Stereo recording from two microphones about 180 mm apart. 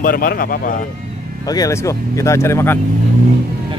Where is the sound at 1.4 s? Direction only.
20° left (ahead or behind).